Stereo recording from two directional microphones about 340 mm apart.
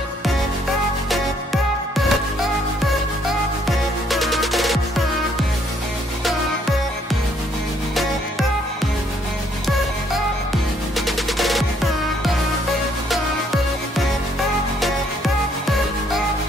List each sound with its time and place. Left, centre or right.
1.1 s music: centre
3.6 s music: centre
7.9 s music: centre
11.0 s music: centre